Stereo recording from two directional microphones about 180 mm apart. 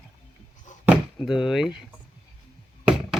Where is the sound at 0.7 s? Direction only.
40° left (ahead or behind).